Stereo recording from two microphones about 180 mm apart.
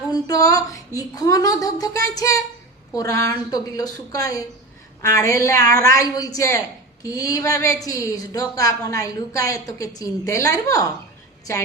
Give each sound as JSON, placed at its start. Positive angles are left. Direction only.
{"t": 0.1, "sound": "a woman's voice", "side_deg": 20}